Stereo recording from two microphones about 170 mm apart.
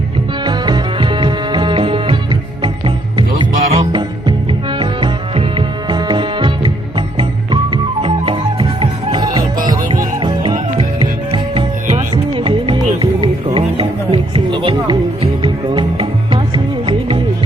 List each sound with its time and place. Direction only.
0.4 s music: 25° right (ahead or behind)